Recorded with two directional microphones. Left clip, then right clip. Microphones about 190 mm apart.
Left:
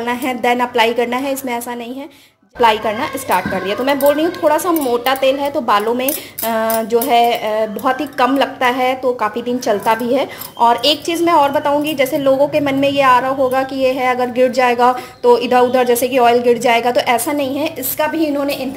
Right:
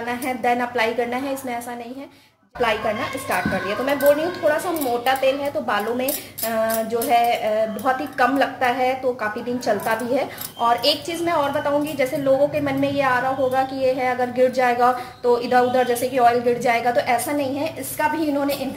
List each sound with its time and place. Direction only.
0.0 s speech: 50° left (ahead or behind)
2.6 s speech: 50° left (ahead or behind)